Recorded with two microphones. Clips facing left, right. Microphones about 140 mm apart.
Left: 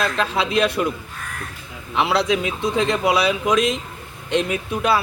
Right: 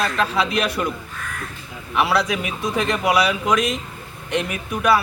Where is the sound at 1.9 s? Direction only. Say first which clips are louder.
Left 1 dB; 20° left (ahead or behind).